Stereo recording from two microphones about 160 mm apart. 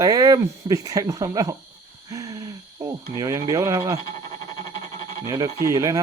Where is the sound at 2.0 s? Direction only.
20° right (ahead or behind).